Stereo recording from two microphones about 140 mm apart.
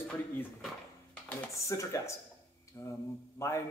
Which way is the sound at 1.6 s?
20° left (ahead or behind).